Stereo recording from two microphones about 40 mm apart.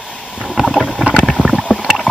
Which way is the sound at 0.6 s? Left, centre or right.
Centre.